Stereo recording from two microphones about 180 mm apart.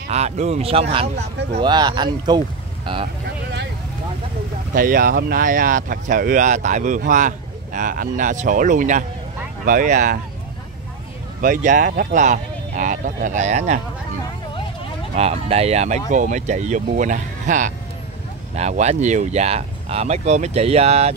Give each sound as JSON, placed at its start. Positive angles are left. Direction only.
{"t": 0.1, "sound": "speech", "side_deg": -35}
{"t": 1.6, "sound": "speech", "side_deg": -25}
{"t": 4.7, "sound": "speech", "side_deg": -50}
{"t": 11.4, "sound": "speech", "side_deg": -45}
{"t": 15.1, "sound": "speech", "side_deg": -35}